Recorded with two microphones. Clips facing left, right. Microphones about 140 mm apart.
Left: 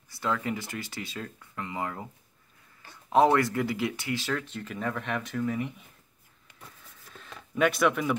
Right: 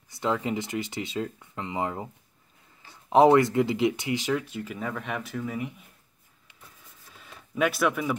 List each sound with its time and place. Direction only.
0.1 s speech: 20° right (ahead or behind)
3.1 s speech: 20° right (ahead or behind); by 5.9 s 5° right (ahead or behind)
7.2 s speech: 5° right (ahead or behind)